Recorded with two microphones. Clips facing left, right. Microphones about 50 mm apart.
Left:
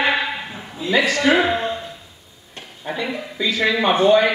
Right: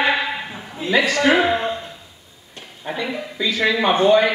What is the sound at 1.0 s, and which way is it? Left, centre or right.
Speech, right.